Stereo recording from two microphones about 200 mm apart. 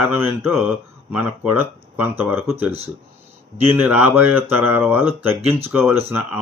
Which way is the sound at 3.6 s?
10° right (ahead or behind).